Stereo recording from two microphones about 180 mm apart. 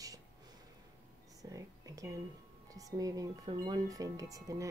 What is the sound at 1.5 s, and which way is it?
Speech, 20° right (ahead or behind).